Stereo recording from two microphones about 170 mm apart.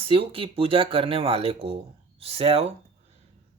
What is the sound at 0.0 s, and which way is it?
Speech, 30° right (ahead or behind).